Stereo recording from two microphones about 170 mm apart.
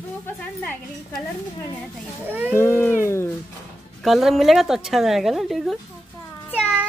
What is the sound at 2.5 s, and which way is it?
Speech, 15° left (ahead or behind).